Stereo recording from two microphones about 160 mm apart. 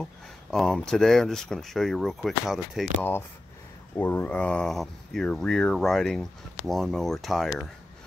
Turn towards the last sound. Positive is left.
turn(degrees=0)  # may be behind; listen again after turning